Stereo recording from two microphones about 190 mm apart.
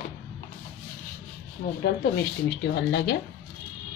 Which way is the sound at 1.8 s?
60° left (ahead or behind).